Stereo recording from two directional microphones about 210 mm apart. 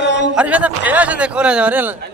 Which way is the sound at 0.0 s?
55° left (ahead or behind).